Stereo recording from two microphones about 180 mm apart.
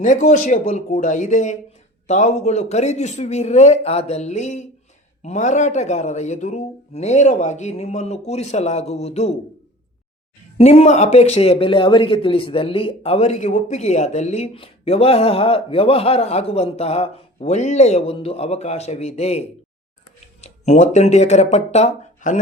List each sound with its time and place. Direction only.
0.0 s speech: 45° left (ahead or behind)
10.6 s speech: 35° left (ahead or behind)